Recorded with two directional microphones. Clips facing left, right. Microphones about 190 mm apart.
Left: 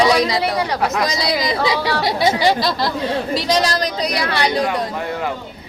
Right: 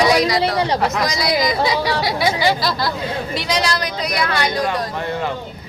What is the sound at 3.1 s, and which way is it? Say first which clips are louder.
A woman's voice: left 4 dB; 40° left (ahead or behind).